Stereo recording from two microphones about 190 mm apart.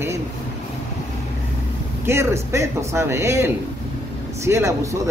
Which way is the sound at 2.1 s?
15° right (ahead or behind).